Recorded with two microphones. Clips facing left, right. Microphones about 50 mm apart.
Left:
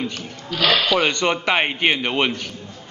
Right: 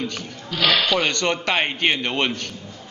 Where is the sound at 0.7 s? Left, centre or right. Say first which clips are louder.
Left 2 dB; centre.